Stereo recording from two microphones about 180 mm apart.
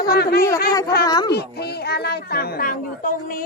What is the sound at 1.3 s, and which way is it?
Speech, 65° left (ahead or behind).